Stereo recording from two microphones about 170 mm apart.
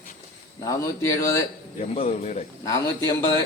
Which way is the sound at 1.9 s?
40° left (ahead or behind).